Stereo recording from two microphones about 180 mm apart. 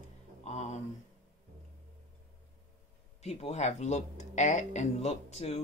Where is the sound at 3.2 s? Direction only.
35° left (ahead or behind).